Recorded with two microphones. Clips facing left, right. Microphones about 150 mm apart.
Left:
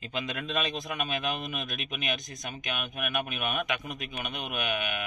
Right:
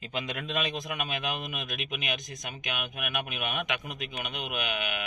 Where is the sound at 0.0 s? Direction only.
15° right (ahead or behind).